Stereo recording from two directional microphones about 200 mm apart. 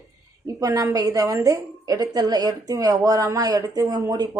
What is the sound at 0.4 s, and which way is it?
Speech, 15° right (ahead or behind).